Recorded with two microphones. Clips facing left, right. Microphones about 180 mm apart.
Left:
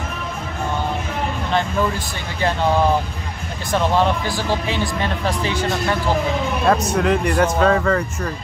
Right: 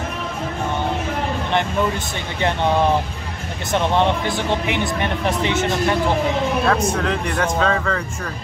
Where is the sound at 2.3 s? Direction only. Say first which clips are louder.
Even; 20° right (ahead or behind).